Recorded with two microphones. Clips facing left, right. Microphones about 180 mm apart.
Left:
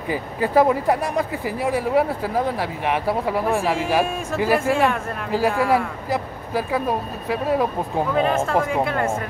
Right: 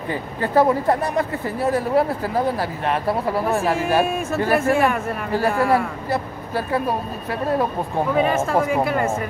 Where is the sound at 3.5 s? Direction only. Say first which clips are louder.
Right 2 dB; centre (ahead or behind).